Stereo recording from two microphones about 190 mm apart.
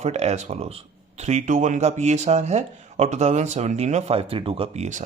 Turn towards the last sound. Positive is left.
turn(degrees=-40)  # may be behind; listen again after turning